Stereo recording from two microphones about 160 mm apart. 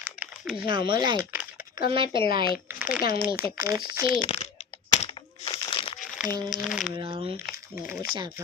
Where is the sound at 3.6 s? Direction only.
25° right (ahead or behind).